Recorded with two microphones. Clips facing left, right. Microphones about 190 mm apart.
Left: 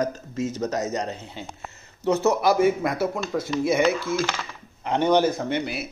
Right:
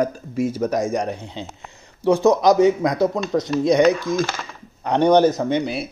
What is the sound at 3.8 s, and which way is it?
Speech, 15° right (ahead or behind).